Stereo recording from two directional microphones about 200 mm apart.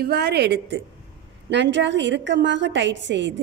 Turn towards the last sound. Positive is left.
turn(degrees=-65)  # may be behind; listen again after turning